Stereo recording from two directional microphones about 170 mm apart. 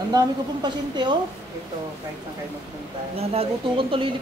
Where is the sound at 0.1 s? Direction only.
25° right (ahead or behind).